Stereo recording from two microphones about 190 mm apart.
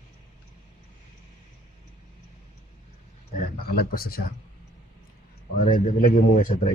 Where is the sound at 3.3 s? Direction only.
50° left (ahead or behind).